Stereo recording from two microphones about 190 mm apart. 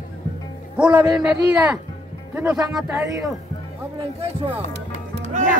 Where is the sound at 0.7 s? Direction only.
5° right (ahead or behind).